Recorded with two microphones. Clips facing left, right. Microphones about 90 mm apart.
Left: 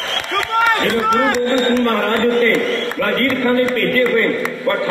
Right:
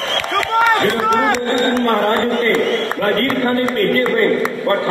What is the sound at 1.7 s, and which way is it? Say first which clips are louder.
A man's voice: right 1 dB; 35° right (ahead or behind).